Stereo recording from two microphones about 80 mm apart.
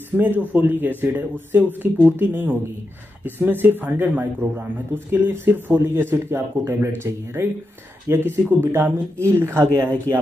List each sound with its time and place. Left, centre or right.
0.2 s speech: right